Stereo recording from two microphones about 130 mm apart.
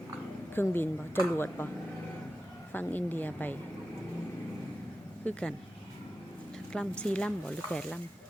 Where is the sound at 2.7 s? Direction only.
15° left (ahead or behind).